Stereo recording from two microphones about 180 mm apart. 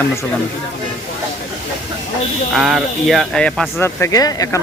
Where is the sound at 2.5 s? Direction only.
Centre (ahead or behind).